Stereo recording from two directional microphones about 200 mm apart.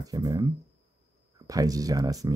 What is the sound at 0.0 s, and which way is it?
Speech, 20° right (ahead or behind).